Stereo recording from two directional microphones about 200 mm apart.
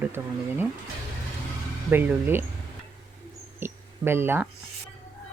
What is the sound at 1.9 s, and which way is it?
Speech, 10° right (ahead or behind).